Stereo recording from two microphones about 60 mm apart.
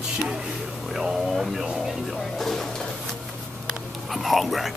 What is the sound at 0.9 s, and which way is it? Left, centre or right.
Speech, centre.